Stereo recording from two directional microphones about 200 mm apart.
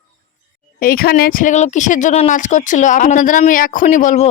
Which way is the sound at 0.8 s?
45° left (ahead or behind).